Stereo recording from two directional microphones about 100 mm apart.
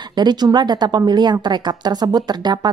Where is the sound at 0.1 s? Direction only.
45° right (ahead or behind).